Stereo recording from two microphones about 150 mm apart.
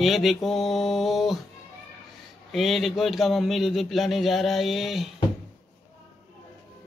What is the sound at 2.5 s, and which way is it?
A man's voice, centre (ahead or behind).